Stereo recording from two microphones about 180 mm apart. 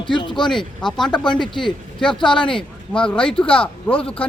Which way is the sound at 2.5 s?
5° left (ahead or behind).